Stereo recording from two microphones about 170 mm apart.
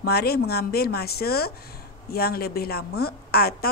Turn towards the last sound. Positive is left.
turn(degrees=65)  # may be behind; listen again after turning